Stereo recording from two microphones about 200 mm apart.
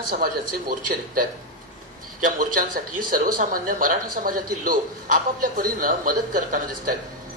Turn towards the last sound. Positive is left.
turn(degrees=-45)  # may be behind; listen again after turning